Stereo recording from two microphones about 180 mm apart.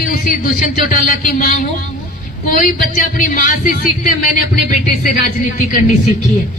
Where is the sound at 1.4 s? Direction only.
55° left (ahead or behind).